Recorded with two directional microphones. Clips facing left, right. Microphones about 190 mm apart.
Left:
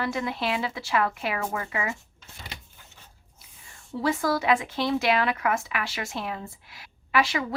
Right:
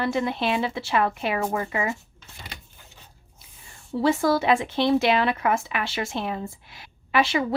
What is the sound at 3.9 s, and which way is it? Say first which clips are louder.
Speech: right 4 dB; 25° right (ahead or behind).